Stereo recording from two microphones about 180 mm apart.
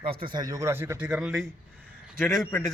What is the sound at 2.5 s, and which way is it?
Speech, 15° left (ahead or behind).